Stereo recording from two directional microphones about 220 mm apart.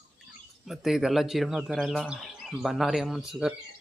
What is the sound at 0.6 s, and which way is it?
Speech, centre (ahead or behind).